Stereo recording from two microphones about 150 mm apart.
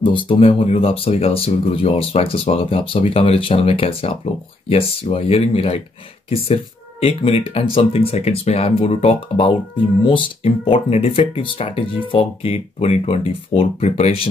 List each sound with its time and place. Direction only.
0.0 s speech: 35° left (ahead or behind)